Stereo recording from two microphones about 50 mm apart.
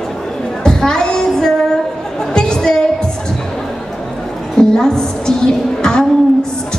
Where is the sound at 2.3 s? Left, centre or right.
Centre.